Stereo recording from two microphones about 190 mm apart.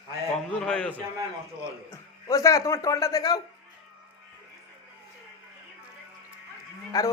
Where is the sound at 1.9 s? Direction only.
15° left (ahead or behind).